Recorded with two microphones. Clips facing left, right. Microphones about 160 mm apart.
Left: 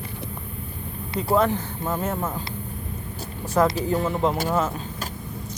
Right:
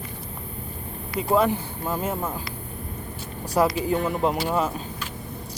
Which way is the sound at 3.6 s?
15° right (ahead or behind).